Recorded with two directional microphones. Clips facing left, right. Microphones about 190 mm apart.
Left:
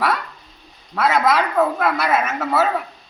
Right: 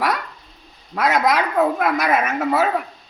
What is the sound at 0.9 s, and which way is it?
A woman's voice, 15° right (ahead or behind).